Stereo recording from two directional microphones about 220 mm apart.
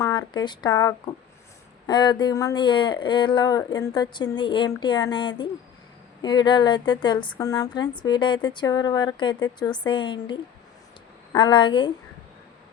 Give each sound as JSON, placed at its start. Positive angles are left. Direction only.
{"t": 0.0, "sound": "speech", "side_deg": 20}